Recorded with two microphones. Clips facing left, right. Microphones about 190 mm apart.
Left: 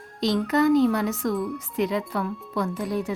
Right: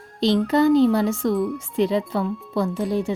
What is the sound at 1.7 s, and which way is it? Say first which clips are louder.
Speech: right 4 dB; 30° right (ahead or behind).